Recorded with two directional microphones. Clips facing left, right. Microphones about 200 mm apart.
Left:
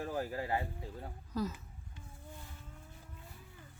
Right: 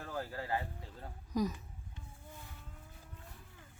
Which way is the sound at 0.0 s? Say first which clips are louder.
Left 4 dB; 15° left (ahead or behind).